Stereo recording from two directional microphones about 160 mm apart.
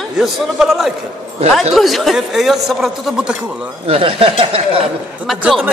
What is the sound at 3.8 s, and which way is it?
Speech, 35° right (ahead or behind).